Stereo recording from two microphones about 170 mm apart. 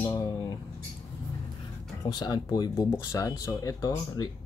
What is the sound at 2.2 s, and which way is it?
Speech, 25° left (ahead or behind).